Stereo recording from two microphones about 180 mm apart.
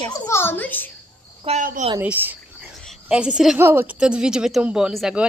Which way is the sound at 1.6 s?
50° right (ahead or behind).